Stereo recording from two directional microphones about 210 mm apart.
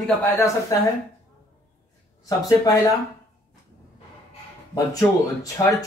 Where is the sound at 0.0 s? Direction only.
10° left (ahead or behind).